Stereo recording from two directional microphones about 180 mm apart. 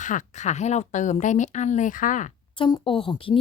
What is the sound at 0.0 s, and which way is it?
Speech, 40° left (ahead or behind).